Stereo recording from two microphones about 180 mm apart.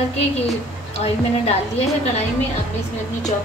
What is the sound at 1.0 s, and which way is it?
Speech, 35° left (ahead or behind).